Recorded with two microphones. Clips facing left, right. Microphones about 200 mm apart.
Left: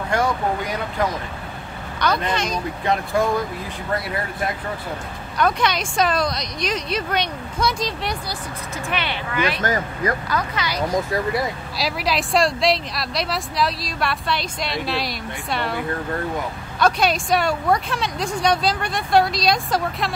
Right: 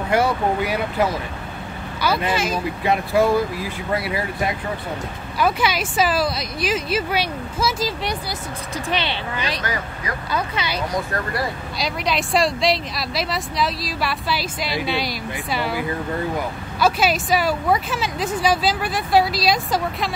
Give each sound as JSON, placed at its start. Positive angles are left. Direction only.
{"t": 0.1, "sound": "speech", "side_deg": -10}
{"t": 8.9, "sound": "speech", "side_deg": -25}
{"t": 9.6, "sound": "speech", "side_deg": 45}
{"t": 10.3, "sound": "speech", "side_deg": -25}
{"t": 11.8, "sound": "speech", "side_deg": 0}
{"t": 16.8, "sound": "speech", "side_deg": -5}